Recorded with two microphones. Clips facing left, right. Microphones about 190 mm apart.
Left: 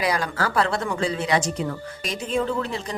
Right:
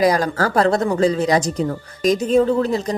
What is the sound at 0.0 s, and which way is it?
Speech, 40° right (ahead or behind).